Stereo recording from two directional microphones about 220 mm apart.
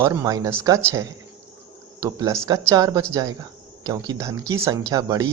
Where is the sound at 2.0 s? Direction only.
15° right (ahead or behind).